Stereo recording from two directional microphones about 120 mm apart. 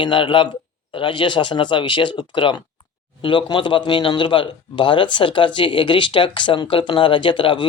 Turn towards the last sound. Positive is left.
turn(degrees=45)  # may be behind; listen again after turning